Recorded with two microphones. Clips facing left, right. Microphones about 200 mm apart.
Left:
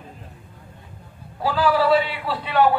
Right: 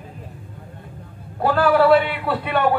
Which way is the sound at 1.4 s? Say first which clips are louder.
Right 4 dB; 55° right (ahead or behind).